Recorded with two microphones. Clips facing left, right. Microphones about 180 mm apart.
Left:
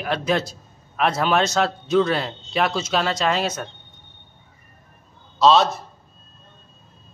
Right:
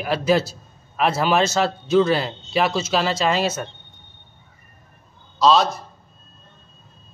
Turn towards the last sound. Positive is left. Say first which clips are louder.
# left 1 dB
turn(degrees=0)  # may be behind; listen again after turning